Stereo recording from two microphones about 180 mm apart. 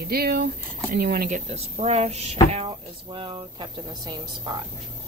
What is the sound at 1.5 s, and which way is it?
Speech, 35° right (ahead or behind).